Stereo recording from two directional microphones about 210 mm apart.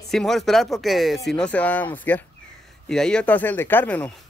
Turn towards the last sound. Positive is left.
turn(degrees=5)  # may be behind; listen again after turning